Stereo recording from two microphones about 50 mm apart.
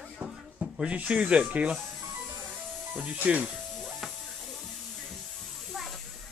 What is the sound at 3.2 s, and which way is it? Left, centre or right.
Speech, right.